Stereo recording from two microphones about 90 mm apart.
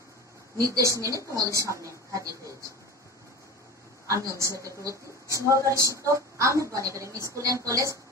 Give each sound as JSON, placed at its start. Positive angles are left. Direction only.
{"t": 0.6, "sound": "speech", "side_deg": -40}
{"t": 4.1, "sound": "speech", "side_deg": -35}